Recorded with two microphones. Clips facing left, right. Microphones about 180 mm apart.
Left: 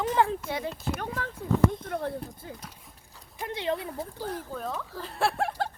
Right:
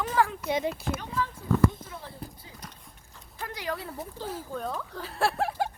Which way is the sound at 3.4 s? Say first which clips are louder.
Left 4 dB; 25° left (ahead or behind).